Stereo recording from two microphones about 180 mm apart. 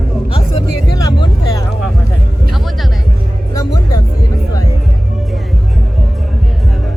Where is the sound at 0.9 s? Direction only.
20° left (ahead or behind).